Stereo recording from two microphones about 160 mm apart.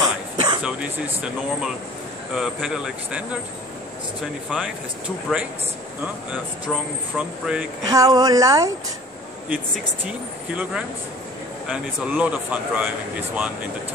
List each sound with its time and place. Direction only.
0.0 s a sound: 25° right (ahead or behind)
0.6 s speech: 5° right (ahead or behind)
7.2 s speech: 5° right (ahead or behind)
7.8 s a woman's voice: 25° right (ahead or behind)
10.0 s speech: 5° right (ahead or behind)